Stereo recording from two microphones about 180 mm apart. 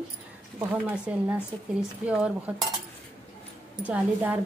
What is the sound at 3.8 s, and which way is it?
Speech, 10° right (ahead or behind).